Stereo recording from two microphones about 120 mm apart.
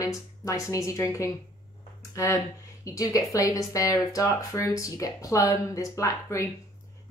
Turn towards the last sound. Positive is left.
turn(degrees=25)  # may be behind; listen again after turning